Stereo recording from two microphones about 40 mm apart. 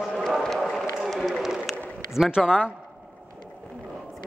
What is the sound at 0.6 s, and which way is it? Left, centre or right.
Run, centre.